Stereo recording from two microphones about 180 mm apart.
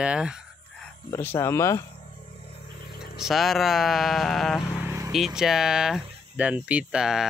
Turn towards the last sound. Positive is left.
turn(degrees=-5)  # may be behind; listen again after turning